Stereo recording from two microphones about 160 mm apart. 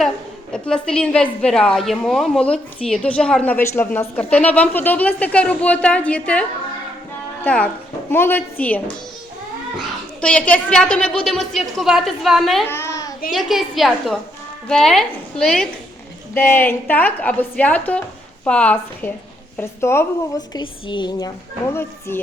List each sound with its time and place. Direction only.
0.5 s a woman's voice: 5° left (ahead or behind)
7.4 s speech: 10° left (ahead or behind)
10.2 s a woman's voice: 5° left (ahead or behind)
12.6 s babbling: 15° left (ahead or behind)
13.3 s a woman's voice: centre (ahead or behind)